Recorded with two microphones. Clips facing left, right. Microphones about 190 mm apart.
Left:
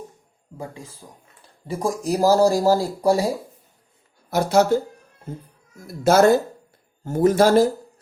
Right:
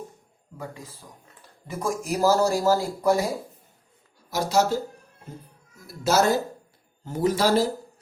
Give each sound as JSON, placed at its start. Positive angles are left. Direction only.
{"t": 0.5, "sound": "speech", "side_deg": 30}
{"t": 4.3, "sound": "speech", "side_deg": 55}